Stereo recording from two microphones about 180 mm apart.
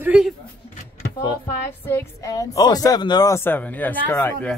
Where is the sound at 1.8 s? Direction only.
10° left (ahead or behind).